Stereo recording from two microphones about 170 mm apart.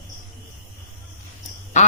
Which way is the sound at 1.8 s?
45° left (ahead or behind).